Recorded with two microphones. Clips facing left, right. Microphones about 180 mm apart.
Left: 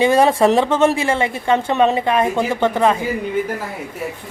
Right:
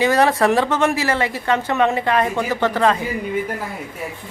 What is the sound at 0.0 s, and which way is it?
A woman's voice, 25° left (ahead or behind).